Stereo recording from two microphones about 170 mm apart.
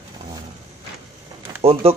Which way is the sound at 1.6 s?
35° right (ahead or behind).